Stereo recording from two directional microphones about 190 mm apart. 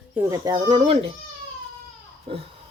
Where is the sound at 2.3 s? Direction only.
30° right (ahead or behind).